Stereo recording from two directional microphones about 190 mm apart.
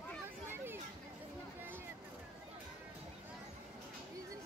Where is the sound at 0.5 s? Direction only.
10° right (ahead or behind).